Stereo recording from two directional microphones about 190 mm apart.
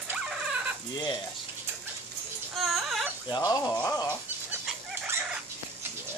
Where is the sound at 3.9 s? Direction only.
20° left (ahead or behind).